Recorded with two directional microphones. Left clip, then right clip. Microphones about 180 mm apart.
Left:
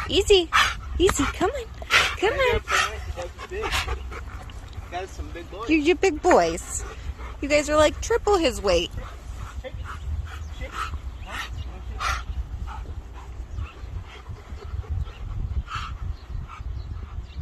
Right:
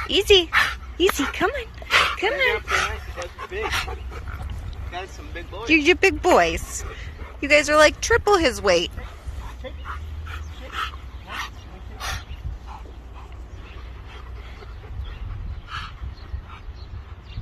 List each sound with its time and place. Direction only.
0.1 s dog: 15° left (ahead or behind); by 2.1 s 30° left (ahead or behind)
2.1 s speech: 50° left (ahead or behind)
3.3 s a sound: 15° right (ahead or behind)
5.7 s a woman's voice: 5° left (ahead or behind)
10.2 s dog: 65° left (ahead or behind)